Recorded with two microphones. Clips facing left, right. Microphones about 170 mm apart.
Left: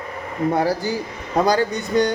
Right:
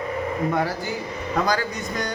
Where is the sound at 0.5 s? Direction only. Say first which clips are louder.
Left 4 dB; 30° left (ahead or behind).